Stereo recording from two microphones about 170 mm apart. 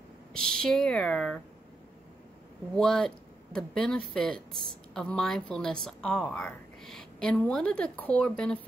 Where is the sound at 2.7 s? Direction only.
5° left (ahead or behind).